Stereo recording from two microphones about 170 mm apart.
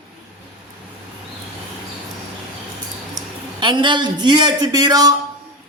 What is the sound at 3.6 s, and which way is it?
A man's voice, 25° right (ahead or behind).